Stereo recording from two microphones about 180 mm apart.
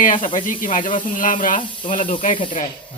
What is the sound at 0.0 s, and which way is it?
Speech, 45° left (ahead or behind).